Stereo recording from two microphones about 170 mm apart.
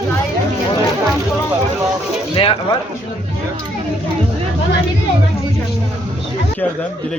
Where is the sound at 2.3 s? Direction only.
30° left (ahead or behind).